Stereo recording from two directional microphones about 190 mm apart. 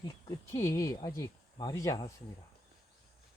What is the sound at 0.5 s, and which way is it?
Speech, 15° left (ahead or behind).